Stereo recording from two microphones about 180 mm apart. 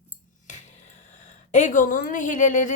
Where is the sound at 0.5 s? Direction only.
40° left (ahead or behind).